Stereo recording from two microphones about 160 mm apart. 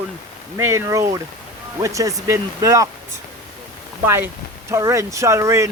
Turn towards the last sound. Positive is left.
turn(degrees=-20)  # may be behind; listen again after turning